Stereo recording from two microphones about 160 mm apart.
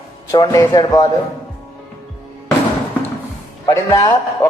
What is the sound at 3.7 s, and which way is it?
Speech, 20° left (ahead or behind).